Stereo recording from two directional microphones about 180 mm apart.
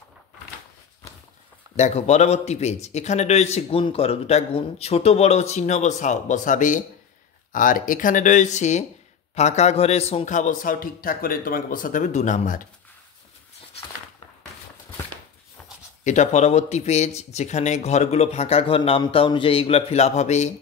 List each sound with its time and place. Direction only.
1.8 s a man's voice: 40° left (ahead or behind)
16.0 s a man's voice: 40° left (ahead or behind)